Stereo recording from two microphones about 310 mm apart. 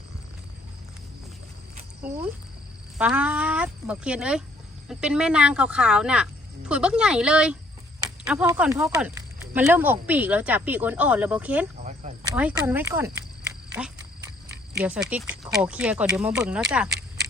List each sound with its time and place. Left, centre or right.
2.0 s speech: centre
11.8 s cricket: right
12.3 s speech: centre
14.8 s speech: centre
16.6 s a sound: centre